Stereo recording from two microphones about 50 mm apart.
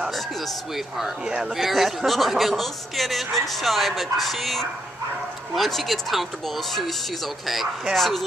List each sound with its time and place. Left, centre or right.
0.1 s speech: centre
1.2 s speech: centre
1.6 s speech: centre